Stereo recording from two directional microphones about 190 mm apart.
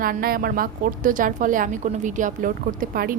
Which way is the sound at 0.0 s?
50° right (ahead or behind).